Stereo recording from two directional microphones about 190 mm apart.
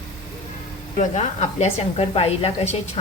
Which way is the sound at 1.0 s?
35° left (ahead or behind).